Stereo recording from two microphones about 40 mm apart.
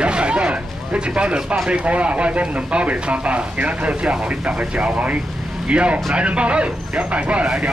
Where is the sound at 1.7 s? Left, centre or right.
Right.